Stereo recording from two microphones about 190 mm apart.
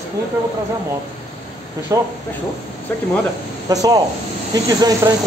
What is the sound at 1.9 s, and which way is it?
Speech, 15° right (ahead or behind).